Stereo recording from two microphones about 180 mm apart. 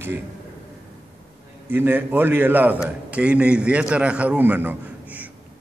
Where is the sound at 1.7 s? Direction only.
10° right (ahead or behind).